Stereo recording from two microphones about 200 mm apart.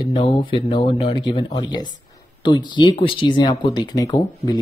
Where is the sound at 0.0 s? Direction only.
25° left (ahead or behind).